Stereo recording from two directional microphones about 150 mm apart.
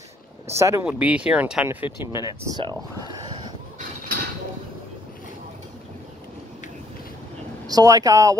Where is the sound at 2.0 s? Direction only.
25° left (ahead or behind).